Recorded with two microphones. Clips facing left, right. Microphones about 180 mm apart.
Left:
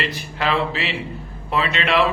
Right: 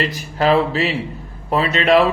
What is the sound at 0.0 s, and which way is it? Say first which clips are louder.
A man's voice: right 6 dB; 40° right (ahead or behind).